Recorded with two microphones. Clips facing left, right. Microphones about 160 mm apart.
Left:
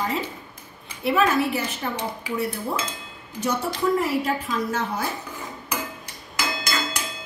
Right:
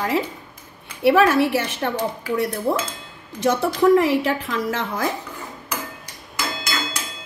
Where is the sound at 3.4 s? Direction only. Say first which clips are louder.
Right 7 dB; 85° right.